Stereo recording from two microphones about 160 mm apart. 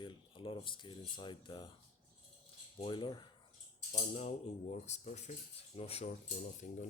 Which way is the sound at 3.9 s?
45° left (ahead or behind).